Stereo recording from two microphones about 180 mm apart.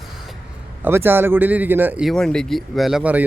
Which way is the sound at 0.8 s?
10° right (ahead or behind).